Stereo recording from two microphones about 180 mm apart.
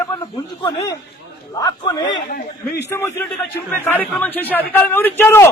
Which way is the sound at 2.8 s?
15° left (ahead or behind).